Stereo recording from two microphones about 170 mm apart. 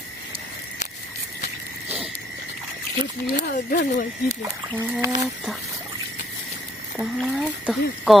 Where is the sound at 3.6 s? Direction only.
45° left (ahead or behind).